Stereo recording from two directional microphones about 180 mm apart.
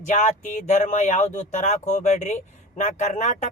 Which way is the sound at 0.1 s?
45° left (ahead or behind).